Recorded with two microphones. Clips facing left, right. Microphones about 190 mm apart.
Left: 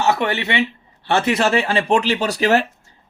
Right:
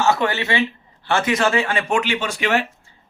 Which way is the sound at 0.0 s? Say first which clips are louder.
Even; 25° left (ahead or behind).